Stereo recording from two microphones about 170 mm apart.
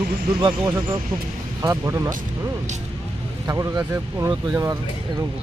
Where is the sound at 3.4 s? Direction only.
15° right (ahead or behind).